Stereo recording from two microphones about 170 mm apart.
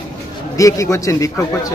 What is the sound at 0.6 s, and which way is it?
A man's voice, 20° left (ahead or behind).